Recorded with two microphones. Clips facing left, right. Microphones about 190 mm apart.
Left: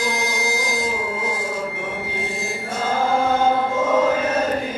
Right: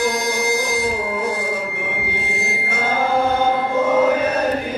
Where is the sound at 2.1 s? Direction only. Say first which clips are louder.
Right 1 dB; 65° right (ahead or behind).